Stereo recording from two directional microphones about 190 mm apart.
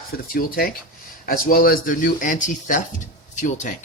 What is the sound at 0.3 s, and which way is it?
Speech, 50° left (ahead or behind).